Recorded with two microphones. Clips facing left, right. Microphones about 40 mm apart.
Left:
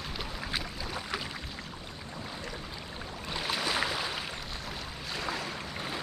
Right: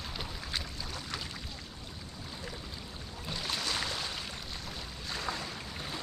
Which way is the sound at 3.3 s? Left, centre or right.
Centre.